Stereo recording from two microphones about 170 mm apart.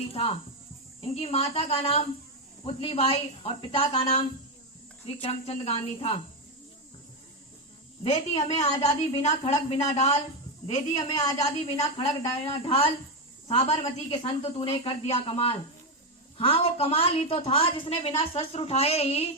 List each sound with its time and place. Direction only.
0.1 s a woman's voice: 35° left (ahead or behind)
8.0 s a woman's voice: 40° left (ahead or behind)
11.1 s a woman's voice: 20° left (ahead or behind)
11.4 s a woman's voice: 35° left (ahead or behind)